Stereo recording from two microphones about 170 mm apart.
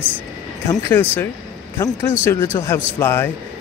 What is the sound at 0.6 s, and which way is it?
Speech, 10° left (ahead or behind).